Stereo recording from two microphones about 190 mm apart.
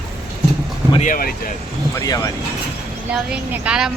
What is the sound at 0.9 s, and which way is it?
Speech, 45° left (ahead or behind).